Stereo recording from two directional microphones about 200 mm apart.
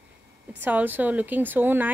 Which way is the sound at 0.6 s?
10° right (ahead or behind).